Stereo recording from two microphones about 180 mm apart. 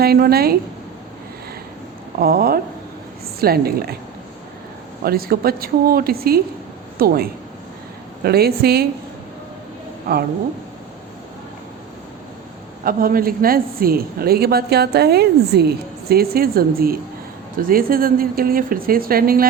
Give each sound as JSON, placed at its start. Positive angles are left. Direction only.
{"t": 0.0, "sound": "a woman's voice", "side_deg": -60}
{"t": 2.1, "sound": "a woman's voice", "side_deg": -55}
{"t": 5.0, "sound": "a woman's voice", "side_deg": -55}
{"t": 12.8, "sound": "a woman's voice", "side_deg": -55}